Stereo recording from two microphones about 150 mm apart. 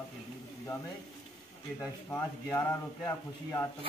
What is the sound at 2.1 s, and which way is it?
A man's voice, 15° left (ahead or behind).